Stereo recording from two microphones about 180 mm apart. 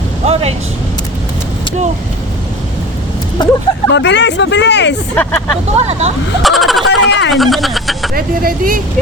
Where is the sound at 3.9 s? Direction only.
85° left.